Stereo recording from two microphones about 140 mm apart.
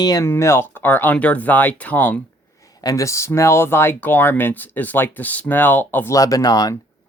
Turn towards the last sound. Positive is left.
turn(degrees=25)  # may be behind; listen again after turning